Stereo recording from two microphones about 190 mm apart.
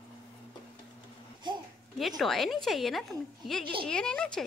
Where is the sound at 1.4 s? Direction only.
25° right (ahead or behind).